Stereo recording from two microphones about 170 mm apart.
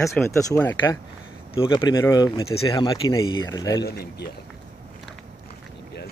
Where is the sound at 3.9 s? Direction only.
70° left (ahead or behind).